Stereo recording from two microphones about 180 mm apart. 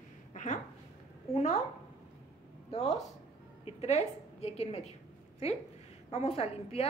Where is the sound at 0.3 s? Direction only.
45° left (ahead or behind).